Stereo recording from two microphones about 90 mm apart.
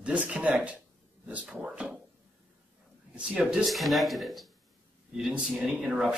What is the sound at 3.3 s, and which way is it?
Speech, 10° right (ahead or behind).